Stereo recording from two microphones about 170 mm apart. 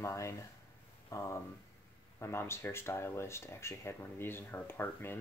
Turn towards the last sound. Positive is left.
turn(degrees=15)  # may be behind; listen again after turning